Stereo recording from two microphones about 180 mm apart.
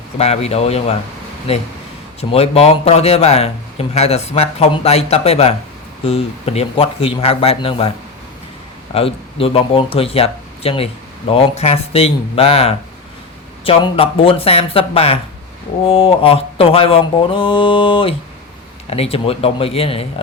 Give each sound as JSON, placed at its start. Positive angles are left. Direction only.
{"t": 0.2, "sound": "a man's voice", "side_deg": 35}
{"t": 2.3, "sound": "a man's voice", "side_deg": 35}
{"t": 8.9, "sound": "a man's voice", "side_deg": 30}
{"t": 19.1, "sound": "a man's voice", "side_deg": 30}